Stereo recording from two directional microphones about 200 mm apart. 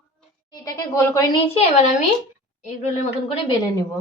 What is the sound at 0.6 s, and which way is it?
Speech, 15° left (ahead or behind).